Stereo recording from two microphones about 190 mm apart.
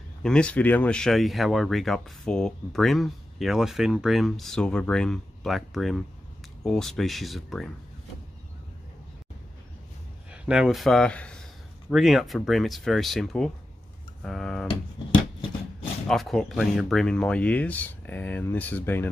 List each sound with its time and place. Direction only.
0.2 s speech: 5° left (ahead or behind)
10.3 s speech: 5° right (ahead or behind)
14.7 s a sound: 25° left (ahead or behind)
16.1 s speech: centre (ahead or behind)